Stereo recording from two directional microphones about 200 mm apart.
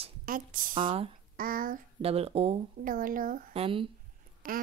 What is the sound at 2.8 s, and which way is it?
Speech, 45° right (ahead or behind).